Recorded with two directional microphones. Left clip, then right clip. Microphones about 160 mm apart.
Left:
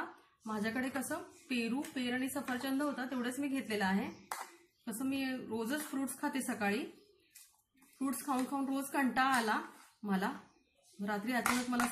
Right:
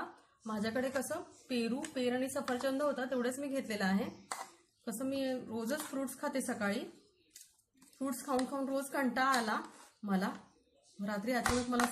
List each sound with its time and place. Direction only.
0.5 s speech: 45° right (ahead or behind)
8.0 s speech: 40° right (ahead or behind)